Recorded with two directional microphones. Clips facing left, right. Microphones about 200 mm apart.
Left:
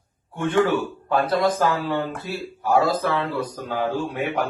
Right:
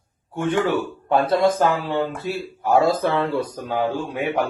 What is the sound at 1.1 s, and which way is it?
Speech, 25° right (ahead or behind).